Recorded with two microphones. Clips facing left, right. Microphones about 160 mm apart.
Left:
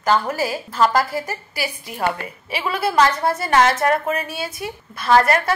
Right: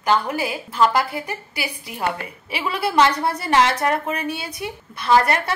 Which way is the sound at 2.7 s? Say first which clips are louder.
Even; 30° right (ahead or behind).